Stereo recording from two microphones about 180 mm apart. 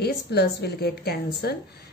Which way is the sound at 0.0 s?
65° left (ahead or behind).